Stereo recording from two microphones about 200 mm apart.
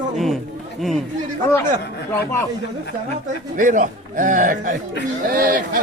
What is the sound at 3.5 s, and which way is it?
Speech, 40° right (ahead or behind).